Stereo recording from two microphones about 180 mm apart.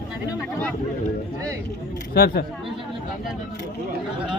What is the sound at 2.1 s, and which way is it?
Speech, 60° left (ahead or behind).